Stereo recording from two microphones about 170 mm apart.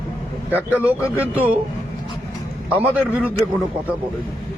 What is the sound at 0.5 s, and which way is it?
A man's voice, 10° right (ahead or behind).